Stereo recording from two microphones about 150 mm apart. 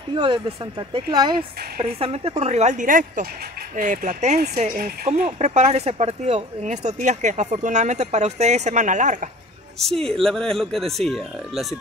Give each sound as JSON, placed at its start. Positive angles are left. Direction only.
{"t": 0.1, "sound": "speech", "side_deg": -30}
{"t": 1.8, "sound": "speech", "side_deg": -40}
{"t": 4.6, "sound": "speech", "side_deg": -65}
{"t": 5.0, "sound": "speech", "side_deg": -50}
{"t": 10.2, "sound": "speech", "side_deg": 5}